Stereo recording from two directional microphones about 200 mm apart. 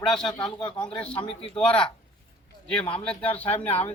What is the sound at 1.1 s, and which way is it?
Speech, 30° left (ahead or behind).